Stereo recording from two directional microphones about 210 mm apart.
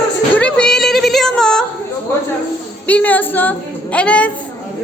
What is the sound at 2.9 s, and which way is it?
Speech, 5° left (ahead or behind).